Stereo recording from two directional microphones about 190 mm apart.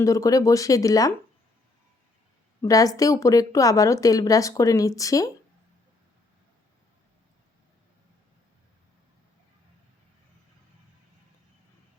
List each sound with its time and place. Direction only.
0.0 s a woman's voice: 15° left (ahead or behind)
2.6 s a woman's voice: 20° left (ahead or behind)